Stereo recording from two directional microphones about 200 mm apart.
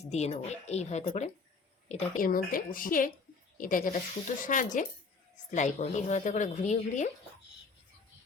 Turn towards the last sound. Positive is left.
turn(degrees=40)  # may be behind; listen again after turning